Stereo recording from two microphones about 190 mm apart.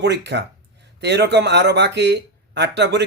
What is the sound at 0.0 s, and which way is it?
Speech, 65° right (ahead or behind).